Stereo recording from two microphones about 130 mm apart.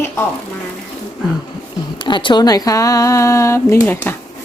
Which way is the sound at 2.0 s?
35° left (ahead or behind).